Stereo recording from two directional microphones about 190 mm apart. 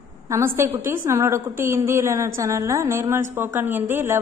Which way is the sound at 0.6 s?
15° right (ahead or behind).